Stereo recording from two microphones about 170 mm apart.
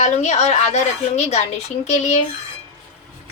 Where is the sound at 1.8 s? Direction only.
40° left (ahead or behind).